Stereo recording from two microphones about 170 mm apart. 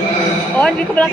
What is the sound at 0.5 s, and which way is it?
Speech, 10° left (ahead or behind).